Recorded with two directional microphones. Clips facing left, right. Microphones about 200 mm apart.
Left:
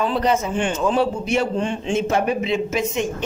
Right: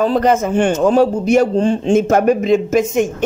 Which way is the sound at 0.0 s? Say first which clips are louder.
Right 6 dB; 45° right (ahead or behind).